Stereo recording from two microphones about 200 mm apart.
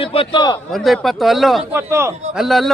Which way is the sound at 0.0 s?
25° left (ahead or behind).